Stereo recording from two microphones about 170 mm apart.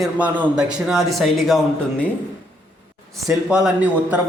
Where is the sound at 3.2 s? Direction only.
5° right (ahead or behind).